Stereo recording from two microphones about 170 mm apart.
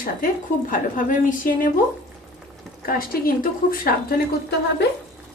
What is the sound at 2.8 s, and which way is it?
A woman's voice, 60° left (ahead or behind).